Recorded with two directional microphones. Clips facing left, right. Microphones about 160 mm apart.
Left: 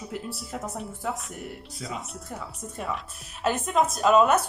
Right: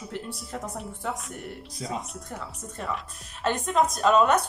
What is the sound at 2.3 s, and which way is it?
Speech, 5° left (ahead or behind).